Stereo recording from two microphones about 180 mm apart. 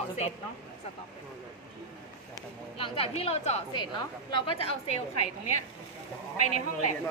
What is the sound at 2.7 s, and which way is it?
A woman's voice, 30° left (ahead or behind).